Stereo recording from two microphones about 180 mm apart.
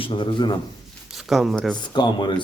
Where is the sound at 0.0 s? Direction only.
30° left (ahead or behind).